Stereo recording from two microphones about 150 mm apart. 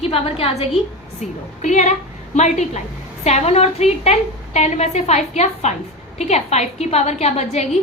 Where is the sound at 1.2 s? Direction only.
55° left (ahead or behind).